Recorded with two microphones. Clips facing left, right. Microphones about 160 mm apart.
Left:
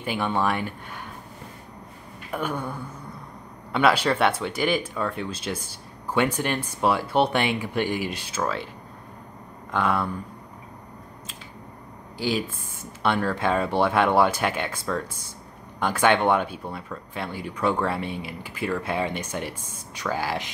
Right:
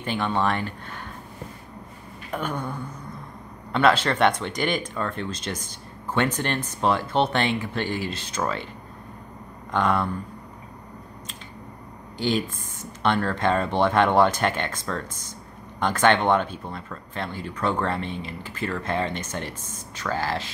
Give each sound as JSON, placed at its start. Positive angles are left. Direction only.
{"t": 0.0, "sound": "speech", "side_deg": 10}
{"t": 2.3, "sound": "speech", "side_deg": 10}
{"t": 8.4, "sound": "speech", "side_deg": 0}
{"t": 9.7, "sound": "speech", "side_deg": 5}
{"t": 12.2, "sound": "speech", "side_deg": 5}